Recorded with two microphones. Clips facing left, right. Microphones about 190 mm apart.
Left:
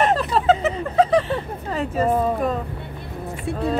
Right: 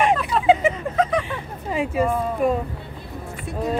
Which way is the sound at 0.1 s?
35° left (ahead or behind).